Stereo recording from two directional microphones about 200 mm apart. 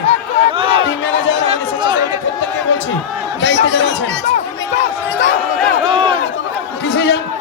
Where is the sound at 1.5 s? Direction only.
25° right (ahead or behind).